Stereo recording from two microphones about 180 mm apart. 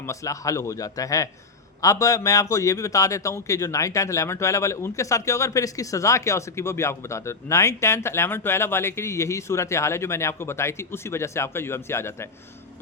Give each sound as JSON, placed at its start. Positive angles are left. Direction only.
{"t": 0.0, "sound": "a man's voice", "side_deg": 15}